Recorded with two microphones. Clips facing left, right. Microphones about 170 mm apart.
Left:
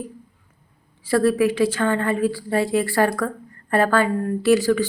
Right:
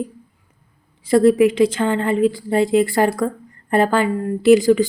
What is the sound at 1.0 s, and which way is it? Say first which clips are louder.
Speech: right 5 dB; 20° right (ahead or behind).